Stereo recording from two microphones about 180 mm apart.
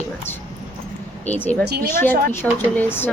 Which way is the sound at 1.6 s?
65° right (ahead or behind).